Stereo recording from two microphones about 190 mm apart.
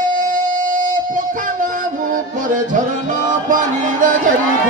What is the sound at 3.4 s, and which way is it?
Music, 45° right (ahead or behind).